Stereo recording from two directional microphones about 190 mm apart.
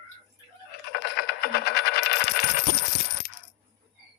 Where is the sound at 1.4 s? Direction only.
55° left (ahead or behind).